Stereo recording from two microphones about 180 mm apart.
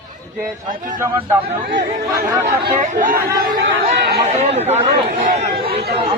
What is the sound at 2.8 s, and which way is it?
Speech, 45° right (ahead or behind).